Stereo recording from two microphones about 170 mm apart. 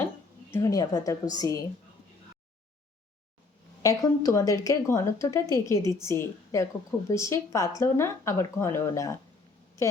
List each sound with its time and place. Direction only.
0.5 s a woman's voice: 20° left (ahead or behind)
3.8 s a woman's voice: 20° left (ahead or behind)